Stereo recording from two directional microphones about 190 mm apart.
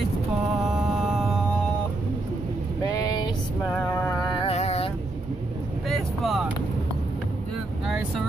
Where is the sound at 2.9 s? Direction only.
20° left (ahead or behind).